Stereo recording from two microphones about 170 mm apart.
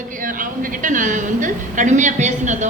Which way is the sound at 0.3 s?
50° right (ahead or behind).